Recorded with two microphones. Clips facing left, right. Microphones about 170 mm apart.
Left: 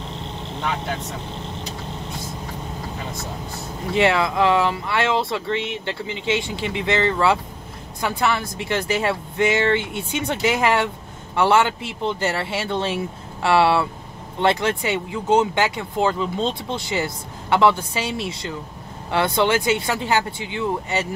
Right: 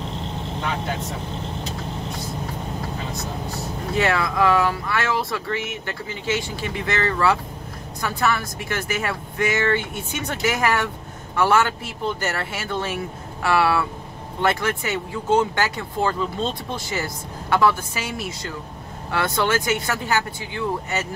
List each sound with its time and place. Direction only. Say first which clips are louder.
3.9 s speech: left 3 dB; 25° left (ahead or behind)